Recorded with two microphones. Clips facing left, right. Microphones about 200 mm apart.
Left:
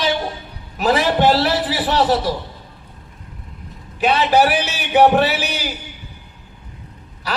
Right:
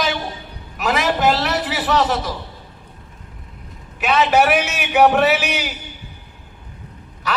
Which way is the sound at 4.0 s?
30° left (ahead or behind).